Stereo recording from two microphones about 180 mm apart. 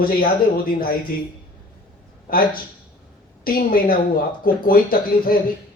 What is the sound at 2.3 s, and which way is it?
Speech, 55° left (ahead or behind).